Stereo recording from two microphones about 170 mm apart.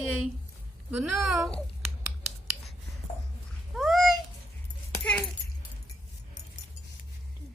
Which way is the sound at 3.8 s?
Centre (ahead or behind).